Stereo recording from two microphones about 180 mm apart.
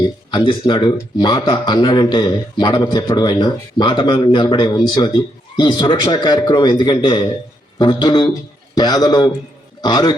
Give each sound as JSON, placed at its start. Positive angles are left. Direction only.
{"t": 0.3, "sound": "a man's voice", "side_deg": 25}